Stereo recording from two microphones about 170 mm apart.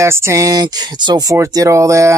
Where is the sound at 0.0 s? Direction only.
15° right (ahead or behind).